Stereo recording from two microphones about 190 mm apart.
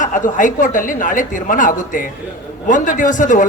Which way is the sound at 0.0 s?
45° left (ahead or behind).